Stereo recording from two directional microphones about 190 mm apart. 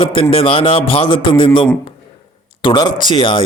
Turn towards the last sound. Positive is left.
turn(degrees=25)  # may be behind; listen again after turning